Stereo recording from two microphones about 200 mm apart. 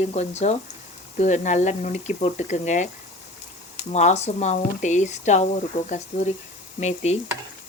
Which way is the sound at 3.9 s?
35° left (ahead or behind).